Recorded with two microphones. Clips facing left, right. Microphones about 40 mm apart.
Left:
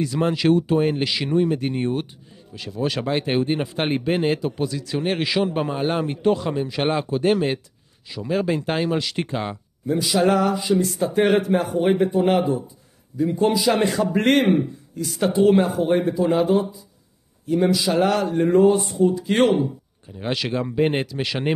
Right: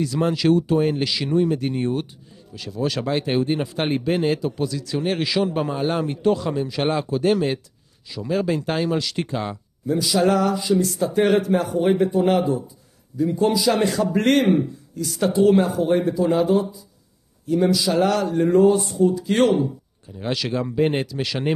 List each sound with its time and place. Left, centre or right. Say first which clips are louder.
0.0 s speech: even; left